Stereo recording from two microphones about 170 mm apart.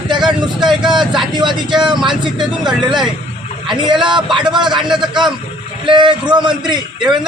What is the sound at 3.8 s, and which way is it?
Speech, 25° right (ahead or behind).